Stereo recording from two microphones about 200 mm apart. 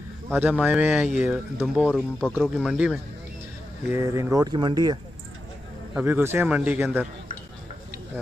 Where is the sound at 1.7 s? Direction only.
Centre (ahead or behind).